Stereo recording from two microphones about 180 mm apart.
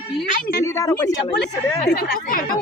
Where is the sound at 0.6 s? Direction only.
15° left (ahead or behind).